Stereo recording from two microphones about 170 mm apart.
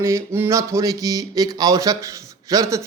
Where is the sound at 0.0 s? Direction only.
15° right (ahead or behind).